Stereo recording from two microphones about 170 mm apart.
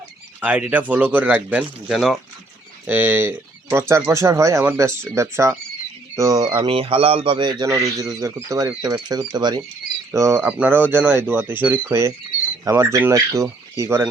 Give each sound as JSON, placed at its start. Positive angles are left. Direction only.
{"t": 0.3, "sound": "a man's voice", "side_deg": -10}